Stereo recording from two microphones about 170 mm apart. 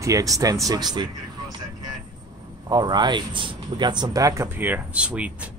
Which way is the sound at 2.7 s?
25° right (ahead or behind).